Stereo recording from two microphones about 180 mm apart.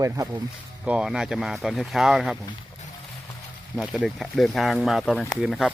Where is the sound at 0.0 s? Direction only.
15° right (ahead or behind).